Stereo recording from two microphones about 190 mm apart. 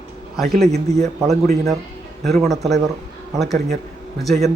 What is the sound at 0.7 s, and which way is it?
Speech, 35° right (ahead or behind).